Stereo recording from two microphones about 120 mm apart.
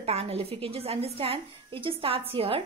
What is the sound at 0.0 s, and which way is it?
Speech, 55° right (ahead or behind).